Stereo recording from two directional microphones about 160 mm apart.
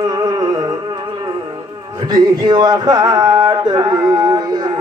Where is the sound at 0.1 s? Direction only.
25° right (ahead or behind).